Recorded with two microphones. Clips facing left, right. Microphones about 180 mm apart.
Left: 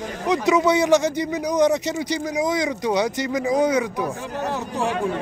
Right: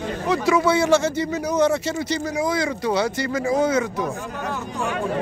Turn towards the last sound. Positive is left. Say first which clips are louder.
# left 2 dB
turn(degrees=35)  # may be behind; listen again after turning